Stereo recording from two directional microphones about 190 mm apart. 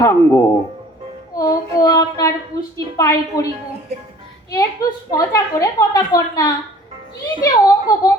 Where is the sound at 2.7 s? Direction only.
20° left (ahead or behind).